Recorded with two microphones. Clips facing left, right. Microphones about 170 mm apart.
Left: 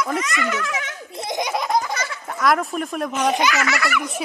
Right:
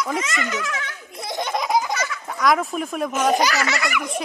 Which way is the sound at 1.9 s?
30° left (ahead or behind).